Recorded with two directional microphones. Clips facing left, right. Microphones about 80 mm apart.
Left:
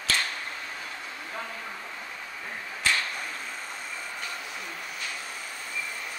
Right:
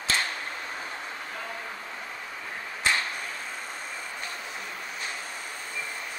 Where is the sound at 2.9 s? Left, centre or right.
Right.